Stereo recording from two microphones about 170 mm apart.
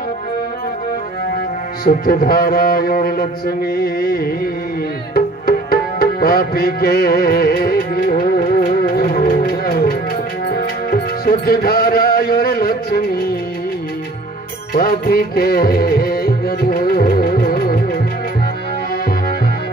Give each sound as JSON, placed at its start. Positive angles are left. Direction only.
{"t": 1.9, "sound": "speech", "side_deg": 55}
{"t": 5.1, "sound": "music", "side_deg": 65}
{"t": 14.7, "sound": "music", "side_deg": 65}